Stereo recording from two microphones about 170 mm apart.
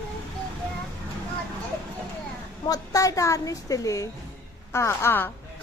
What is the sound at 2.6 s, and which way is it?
A woman's voice, 20° left (ahead or behind).